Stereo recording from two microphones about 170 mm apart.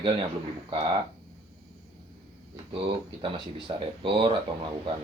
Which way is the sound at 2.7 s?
30° right (ahead or behind).